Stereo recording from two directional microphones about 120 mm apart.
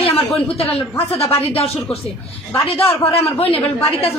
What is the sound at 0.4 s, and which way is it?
A woman's voice, 55° left (ahead or behind).